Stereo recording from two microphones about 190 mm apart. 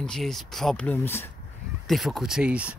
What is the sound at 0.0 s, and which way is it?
Speech, centre (ahead or behind).